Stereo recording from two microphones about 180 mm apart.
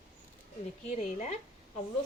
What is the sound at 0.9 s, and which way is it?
Speech, 35° left (ahead or behind).